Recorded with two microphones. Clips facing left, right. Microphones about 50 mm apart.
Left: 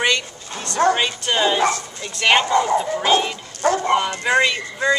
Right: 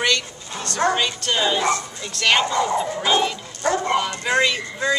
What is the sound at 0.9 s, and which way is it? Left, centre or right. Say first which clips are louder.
Speech: left 2 dB; centre.